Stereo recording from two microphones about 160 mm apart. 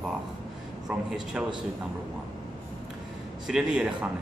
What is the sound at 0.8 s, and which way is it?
Speech, 5° right (ahead or behind).